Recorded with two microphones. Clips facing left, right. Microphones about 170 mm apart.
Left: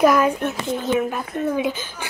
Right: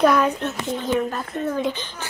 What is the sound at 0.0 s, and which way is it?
A woman's voice, 5° left (ahead or behind).